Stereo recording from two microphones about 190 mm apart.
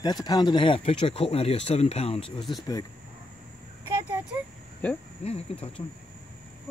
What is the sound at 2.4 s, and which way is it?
Speech, centre (ahead or behind).